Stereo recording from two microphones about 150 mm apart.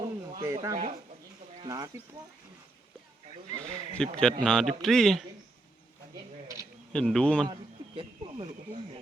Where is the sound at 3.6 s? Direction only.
5° left (ahead or behind).